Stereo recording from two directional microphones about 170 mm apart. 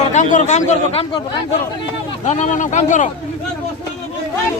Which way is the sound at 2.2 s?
45° left (ahead or behind).